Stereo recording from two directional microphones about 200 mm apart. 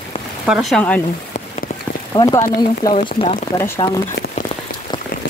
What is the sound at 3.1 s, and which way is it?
Speech, 25° left (ahead or behind).